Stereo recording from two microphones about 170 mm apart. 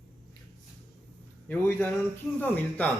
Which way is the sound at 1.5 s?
10° left (ahead or behind).